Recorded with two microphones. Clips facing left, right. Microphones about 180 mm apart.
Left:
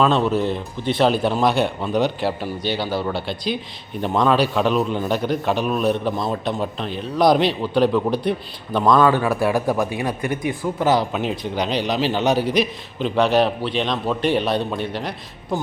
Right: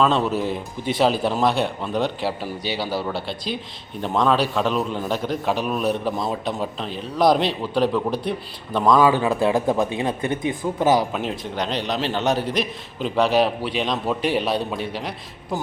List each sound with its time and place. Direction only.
0.0 s a man's voice: centre (ahead or behind)
9.0 s speech: 15° right (ahead or behind)
11.1 s a man's voice: centre (ahead or behind)